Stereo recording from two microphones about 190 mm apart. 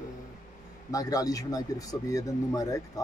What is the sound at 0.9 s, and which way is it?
Speech, 20° left (ahead or behind).